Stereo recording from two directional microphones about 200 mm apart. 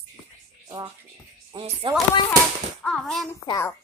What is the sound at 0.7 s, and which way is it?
Speech, 15° right (ahead or behind).